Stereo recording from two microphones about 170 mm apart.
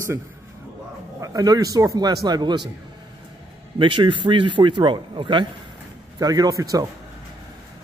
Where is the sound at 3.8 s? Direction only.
30° right (ahead or behind).